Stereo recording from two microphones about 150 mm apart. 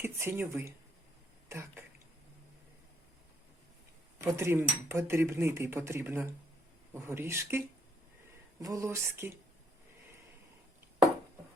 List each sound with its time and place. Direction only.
0.0 s speech: 15° right (ahead or behind)
4.4 s speech: 15° right (ahead or behind)